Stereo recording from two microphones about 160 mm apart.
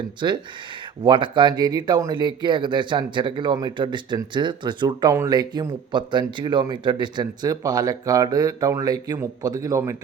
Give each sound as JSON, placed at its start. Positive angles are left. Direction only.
{"t": 0.2, "sound": "speech", "side_deg": -25}